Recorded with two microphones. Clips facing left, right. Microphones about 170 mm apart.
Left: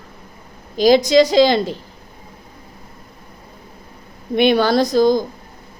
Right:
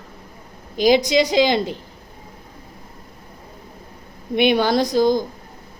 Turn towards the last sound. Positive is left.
turn(degrees=-15)  # may be behind; listen again after turning